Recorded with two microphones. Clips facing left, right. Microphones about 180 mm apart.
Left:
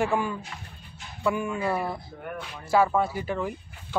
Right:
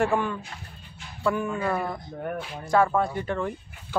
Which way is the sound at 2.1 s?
35° right (ahead or behind).